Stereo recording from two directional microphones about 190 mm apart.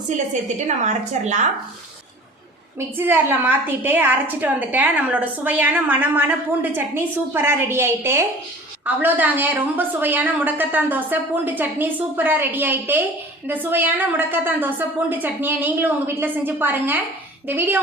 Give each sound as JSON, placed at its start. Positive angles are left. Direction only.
{"t": 1.2, "sound": "speech", "side_deg": -40}
{"t": 2.7, "sound": "a woman's voice", "side_deg": -10}